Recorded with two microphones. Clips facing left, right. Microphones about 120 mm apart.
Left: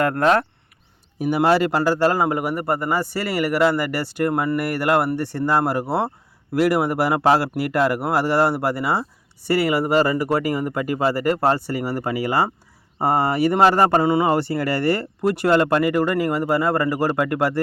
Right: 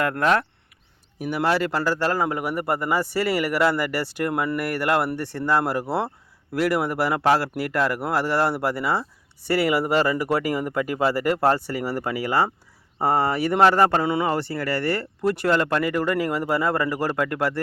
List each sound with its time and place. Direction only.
0.0 s speech: 45° left (ahead or behind)
1.2 s speech: 15° left (ahead or behind)
2.4 s speech: centre (ahead or behind)
14.3 s speech: 15° left (ahead or behind)